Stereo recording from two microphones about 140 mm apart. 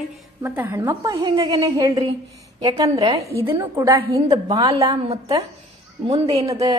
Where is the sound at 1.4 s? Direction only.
40° right (ahead or behind).